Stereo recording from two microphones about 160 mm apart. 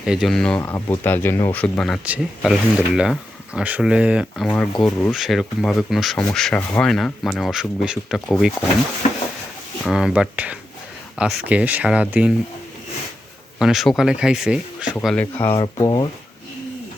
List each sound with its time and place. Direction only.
0.0 s speech: 5° right (ahead or behind)
4.4 s speech: 10° left (ahead or behind)
5.1 s speech: centre (ahead or behind)
9.8 s speech: 5° right (ahead or behind)
13.6 s speech: 5° right (ahead or behind)
15.0 s speech: 10° left (ahead or behind)
15.8 s speech: 25° left (ahead or behind)